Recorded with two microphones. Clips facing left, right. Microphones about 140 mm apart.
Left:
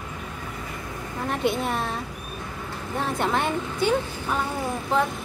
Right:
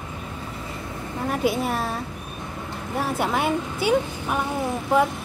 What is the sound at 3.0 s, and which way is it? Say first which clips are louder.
Speech: right 1 dB; 5° right (ahead or behind).